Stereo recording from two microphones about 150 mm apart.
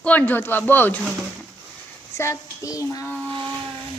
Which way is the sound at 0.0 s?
10° left (ahead or behind).